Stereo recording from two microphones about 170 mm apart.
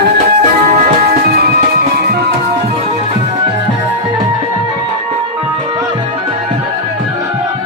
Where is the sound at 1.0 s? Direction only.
65° right (ahead or behind).